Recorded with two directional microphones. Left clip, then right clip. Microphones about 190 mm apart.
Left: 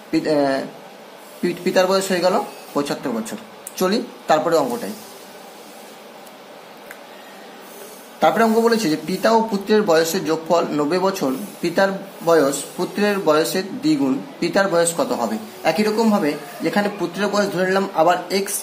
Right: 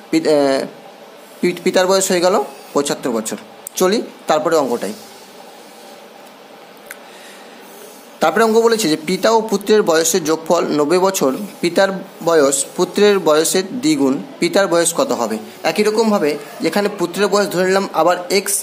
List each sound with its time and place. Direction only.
0.1 s speech: 50° right (ahead or behind)
8.2 s speech: 50° right (ahead or behind)